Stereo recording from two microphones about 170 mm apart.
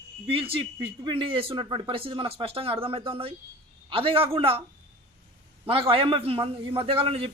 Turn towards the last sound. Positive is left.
turn(degrees=-35)  # may be behind; listen again after turning